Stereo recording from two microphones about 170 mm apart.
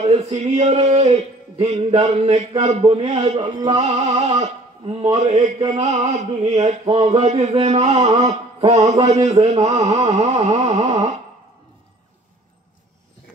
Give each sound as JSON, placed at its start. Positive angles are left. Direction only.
{"t": 0.0, "sound": "music", "side_deg": -40}
{"t": 3.3, "sound": "music", "side_deg": -25}
{"t": 3.8, "sound": "music", "side_deg": -40}